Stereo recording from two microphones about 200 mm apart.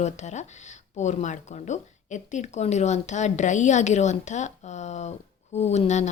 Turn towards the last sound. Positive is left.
turn(degrees=35)  # may be behind; listen again after turning